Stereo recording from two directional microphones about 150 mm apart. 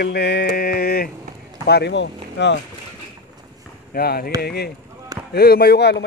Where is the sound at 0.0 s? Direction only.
90° left.